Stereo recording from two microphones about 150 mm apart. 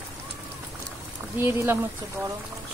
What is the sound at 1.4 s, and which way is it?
Speech, 15° right (ahead or behind).